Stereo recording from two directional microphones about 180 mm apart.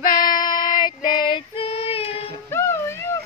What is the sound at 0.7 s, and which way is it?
Female singing, 25° left (ahead or behind).